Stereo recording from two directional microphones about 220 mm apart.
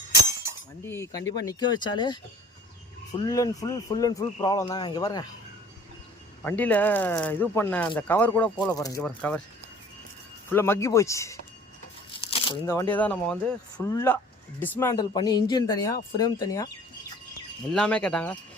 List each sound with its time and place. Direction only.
0.9 s speech: 15° left (ahead or behind)
3.2 s speech: 15° left (ahead or behind)
6.4 s speech: 5° left (ahead or behind)
9.0 s speech: 5° left (ahead or behind)
10.5 s speech: 10° left (ahead or behind)
12.6 s speech: 10° left (ahead or behind)
17.7 s speech: 5° left (ahead or behind)